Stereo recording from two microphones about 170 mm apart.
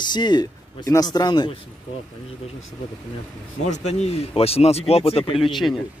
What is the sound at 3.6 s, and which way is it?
Speech, 40° left (ahead or behind).